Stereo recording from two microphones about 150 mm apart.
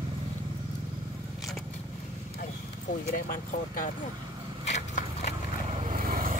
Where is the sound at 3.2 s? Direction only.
65° left (ahead or behind).